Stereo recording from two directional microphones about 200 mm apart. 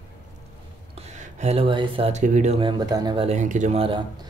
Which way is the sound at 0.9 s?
35° right (ahead or behind).